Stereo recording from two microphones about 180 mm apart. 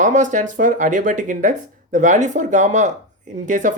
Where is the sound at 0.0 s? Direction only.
45° right (ahead or behind).